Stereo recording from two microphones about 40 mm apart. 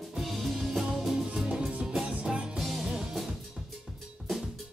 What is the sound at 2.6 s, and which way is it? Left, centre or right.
Music, centre.